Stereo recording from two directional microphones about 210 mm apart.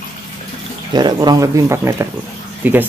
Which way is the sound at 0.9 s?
20° right (ahead or behind).